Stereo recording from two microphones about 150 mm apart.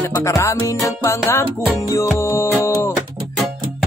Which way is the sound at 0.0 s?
20° left (ahead or behind).